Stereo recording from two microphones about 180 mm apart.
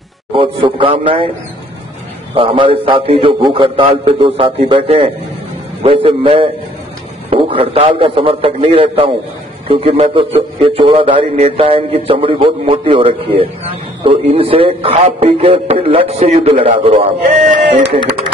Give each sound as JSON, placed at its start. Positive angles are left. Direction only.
{"t": 0.3, "sound": "a man's voice", "side_deg": -30}
{"t": 2.3, "sound": "a man's voice", "side_deg": -30}